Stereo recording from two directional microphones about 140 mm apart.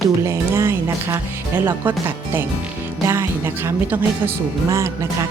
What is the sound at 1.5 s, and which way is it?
Speech, 15° right (ahead or behind).